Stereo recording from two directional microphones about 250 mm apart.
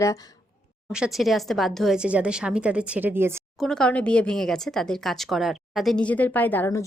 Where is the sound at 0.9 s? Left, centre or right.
Centre.